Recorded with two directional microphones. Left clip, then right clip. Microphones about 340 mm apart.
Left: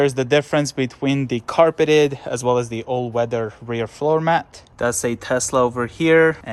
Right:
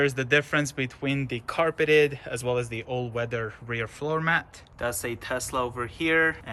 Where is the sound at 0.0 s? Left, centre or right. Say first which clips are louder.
Left 6 dB; centre.